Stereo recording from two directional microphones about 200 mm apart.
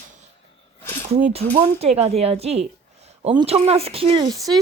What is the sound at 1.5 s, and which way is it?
Speech, 35° right (ahead or behind).